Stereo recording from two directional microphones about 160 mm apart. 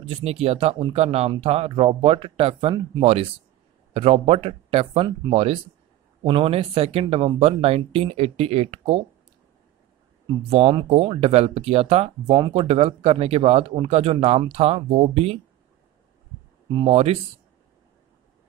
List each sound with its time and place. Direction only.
0.1 s speech: 40° right (ahead or behind)
10.5 s speech: 35° right (ahead or behind)
16.7 s speech: 40° right (ahead or behind)